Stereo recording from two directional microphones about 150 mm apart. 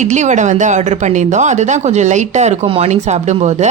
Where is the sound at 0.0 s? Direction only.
55° right (ahead or behind).